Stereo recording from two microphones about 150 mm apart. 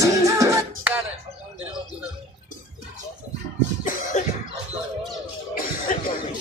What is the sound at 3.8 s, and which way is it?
Cough, 60° left (ahead or behind).